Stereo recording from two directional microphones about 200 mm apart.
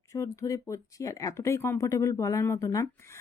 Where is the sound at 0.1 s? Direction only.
15° left (ahead or behind).